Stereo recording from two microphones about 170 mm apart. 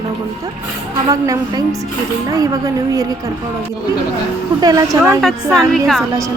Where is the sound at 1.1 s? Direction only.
20° right (ahead or behind).